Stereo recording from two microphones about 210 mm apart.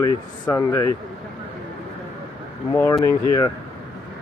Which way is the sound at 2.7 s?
15° left (ahead or behind).